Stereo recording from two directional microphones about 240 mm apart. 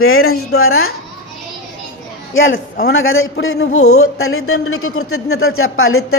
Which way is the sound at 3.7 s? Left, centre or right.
Left.